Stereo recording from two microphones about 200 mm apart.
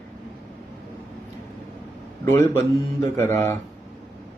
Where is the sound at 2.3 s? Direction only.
15° left (ahead or behind).